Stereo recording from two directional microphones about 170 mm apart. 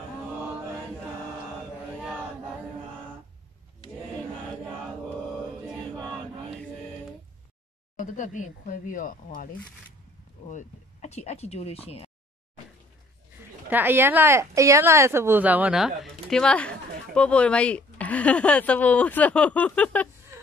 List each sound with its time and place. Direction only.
8.0 s speech: 50° left (ahead or behind)
13.7 s speech: 10° right (ahead or behind); by 20.1 s 10° left (ahead or behind)